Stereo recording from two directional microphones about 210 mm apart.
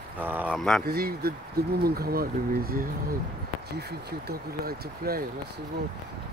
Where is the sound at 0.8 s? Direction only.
45° right (ahead or behind).